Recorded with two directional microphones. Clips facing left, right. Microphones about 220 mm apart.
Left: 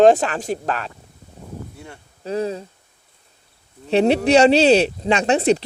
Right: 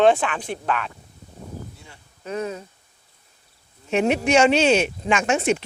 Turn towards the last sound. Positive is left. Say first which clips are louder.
# left 4 dB
turn(degrees=35)  # may be behind; listen again after turning